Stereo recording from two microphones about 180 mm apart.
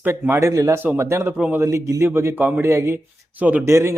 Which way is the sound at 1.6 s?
15° right (ahead or behind).